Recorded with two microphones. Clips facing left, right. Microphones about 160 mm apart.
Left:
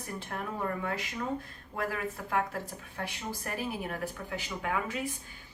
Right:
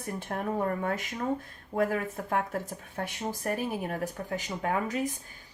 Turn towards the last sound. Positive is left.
turn(degrees=-40)  # may be behind; listen again after turning